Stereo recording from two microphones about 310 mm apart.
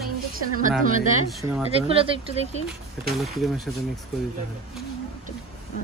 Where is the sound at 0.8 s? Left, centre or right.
Right.